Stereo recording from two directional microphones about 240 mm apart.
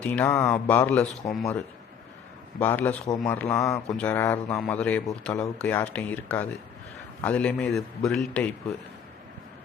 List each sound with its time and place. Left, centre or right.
0.0 s speech: centre